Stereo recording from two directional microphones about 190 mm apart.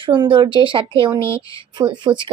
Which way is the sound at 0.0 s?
25° right (ahead or behind).